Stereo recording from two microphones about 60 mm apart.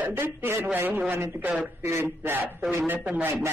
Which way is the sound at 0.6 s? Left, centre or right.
Right.